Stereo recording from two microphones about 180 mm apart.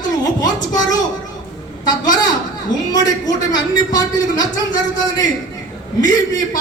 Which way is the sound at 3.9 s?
20° left (ahead or behind).